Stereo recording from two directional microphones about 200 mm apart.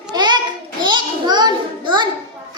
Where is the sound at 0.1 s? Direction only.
20° right (ahead or behind).